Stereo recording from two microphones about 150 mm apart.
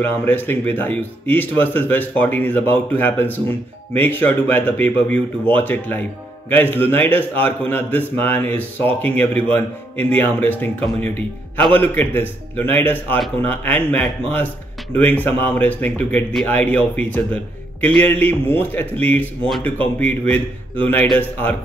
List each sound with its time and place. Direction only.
0.0 s a man's voice: 10° left (ahead or behind)